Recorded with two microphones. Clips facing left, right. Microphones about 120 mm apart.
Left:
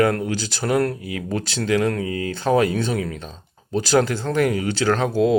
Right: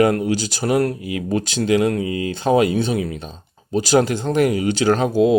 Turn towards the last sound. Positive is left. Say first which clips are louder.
# right 3 dB
turn(degrees=-20)  # may be behind; listen again after turning